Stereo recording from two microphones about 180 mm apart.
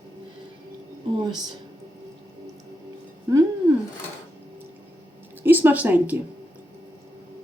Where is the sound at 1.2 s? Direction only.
25° right (ahead or behind).